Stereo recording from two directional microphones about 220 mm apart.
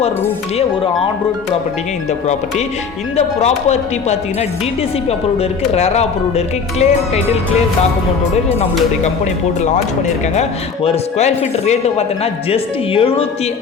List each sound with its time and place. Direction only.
3.2 s speech: 30° left (ahead or behind)
10.8 s speech: 30° left (ahead or behind)